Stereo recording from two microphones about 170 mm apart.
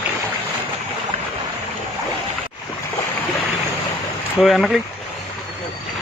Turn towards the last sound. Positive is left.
turn(degrees=0)  # may be behind; listen again after turning